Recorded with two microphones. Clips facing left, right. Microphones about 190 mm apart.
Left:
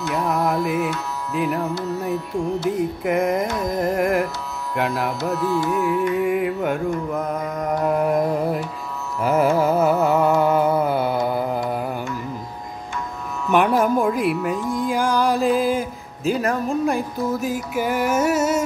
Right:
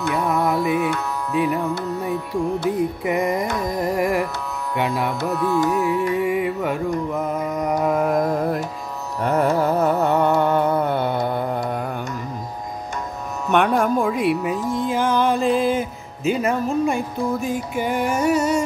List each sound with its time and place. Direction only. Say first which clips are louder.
0.3 s music: right 1 dB; centre (ahead or behind)
2.7 s music: even; centre (ahead or behind)
5.3 s carnatic music: right 2 dB; 50° right (ahead or behind)
6.1 s music: even; centre (ahead or behind)
13.5 s music: left 1 dB; 5° left (ahead or behind)